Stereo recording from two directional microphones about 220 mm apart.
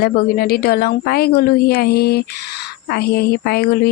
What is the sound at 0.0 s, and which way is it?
Speech, 45° left (ahead or behind).